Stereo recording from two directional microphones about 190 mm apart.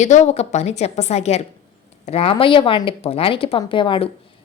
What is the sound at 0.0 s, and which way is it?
A woman's voice, 40° left (ahead or behind).